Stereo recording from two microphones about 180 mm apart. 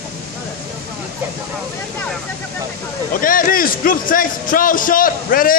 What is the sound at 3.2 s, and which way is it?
A man's voice, 50° left (ahead or behind).